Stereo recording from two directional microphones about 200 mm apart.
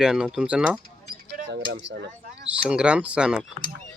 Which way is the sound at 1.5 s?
60° right (ahead or behind).